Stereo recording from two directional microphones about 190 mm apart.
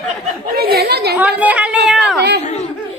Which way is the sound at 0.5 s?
55° right (ahead or behind).